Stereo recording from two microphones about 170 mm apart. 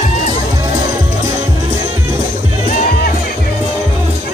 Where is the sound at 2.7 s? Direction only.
50° left (ahead or behind).